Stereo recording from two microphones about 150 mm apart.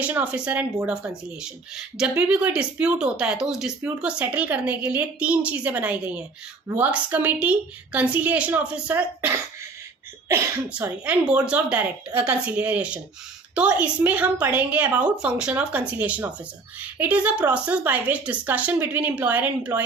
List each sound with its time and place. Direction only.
0.0 s a woman's voice: 10° right (ahead or behind)